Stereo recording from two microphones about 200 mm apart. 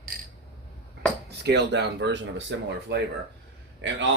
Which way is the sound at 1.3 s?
55° right (ahead or behind).